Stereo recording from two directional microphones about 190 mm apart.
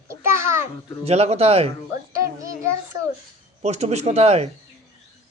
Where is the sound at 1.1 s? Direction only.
35° right (ahead or behind).